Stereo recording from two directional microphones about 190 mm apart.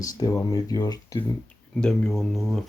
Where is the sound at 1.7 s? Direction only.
5° left (ahead or behind).